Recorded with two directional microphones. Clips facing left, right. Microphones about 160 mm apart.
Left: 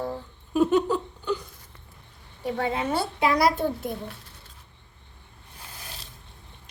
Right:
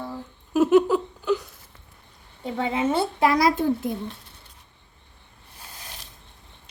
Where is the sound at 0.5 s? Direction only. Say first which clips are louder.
Right 4 dB; 5° right (ahead or behind).